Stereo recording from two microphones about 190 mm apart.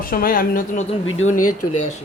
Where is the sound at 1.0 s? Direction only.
90° left.